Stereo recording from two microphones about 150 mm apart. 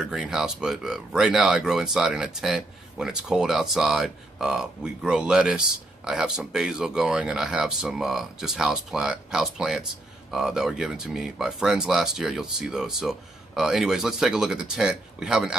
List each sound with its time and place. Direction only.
0.0 s speech: 5° right (ahead or behind)